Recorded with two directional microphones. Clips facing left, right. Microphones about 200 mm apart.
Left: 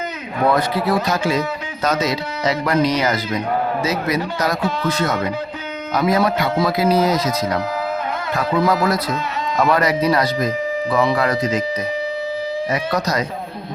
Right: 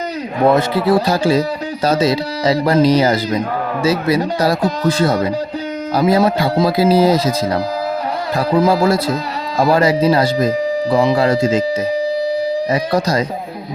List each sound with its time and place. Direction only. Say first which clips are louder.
0.4 s speech: right 4 dB; 25° right (ahead or behind)
12.7 s speech: right 3 dB; 30° right (ahead or behind)